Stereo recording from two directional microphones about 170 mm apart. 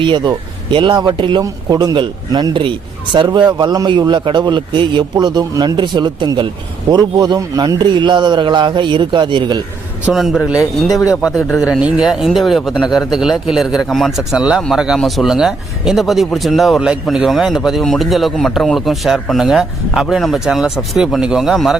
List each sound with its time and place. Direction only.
0.0 s speech: 25° right (ahead or behind)
10.1 s speech: centre (ahead or behind)